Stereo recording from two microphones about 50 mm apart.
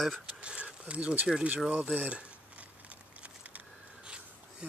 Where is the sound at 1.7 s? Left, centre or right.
Right.